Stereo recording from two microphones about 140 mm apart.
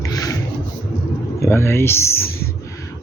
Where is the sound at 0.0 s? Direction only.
25° left (ahead or behind).